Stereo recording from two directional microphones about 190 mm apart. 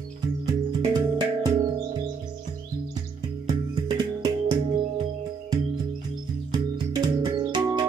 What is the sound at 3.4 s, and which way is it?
Music, 20° right (ahead or behind).